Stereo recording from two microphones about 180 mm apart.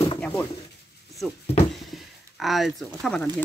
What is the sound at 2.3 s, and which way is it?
Speech, centre (ahead or behind).